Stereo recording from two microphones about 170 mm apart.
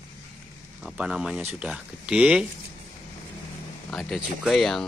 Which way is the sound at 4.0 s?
Centre (ahead or behind).